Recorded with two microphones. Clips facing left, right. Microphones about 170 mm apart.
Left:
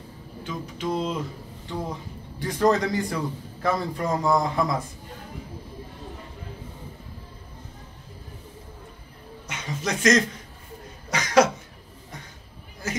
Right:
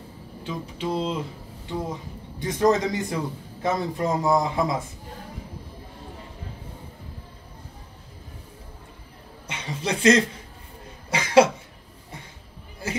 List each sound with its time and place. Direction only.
0.4 s a man's voice: 30° right (ahead or behind)
9.5 s speech: 30° right (ahead or behind)
11.1 s cough: 30° right (ahead or behind)
12.8 s a sound: 30° right (ahead or behind)